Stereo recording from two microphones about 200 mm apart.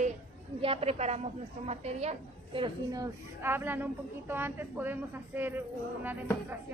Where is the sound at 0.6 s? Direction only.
30° right (ahead or behind).